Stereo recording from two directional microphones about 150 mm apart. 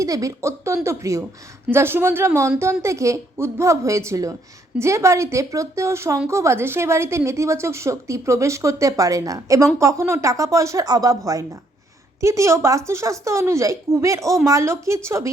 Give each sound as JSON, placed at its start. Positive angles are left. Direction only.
{"t": 0.0, "sound": "a woman's voice", "side_deg": -20}